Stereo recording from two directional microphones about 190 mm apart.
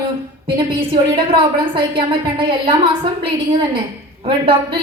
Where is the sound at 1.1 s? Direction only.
25° right (ahead or behind).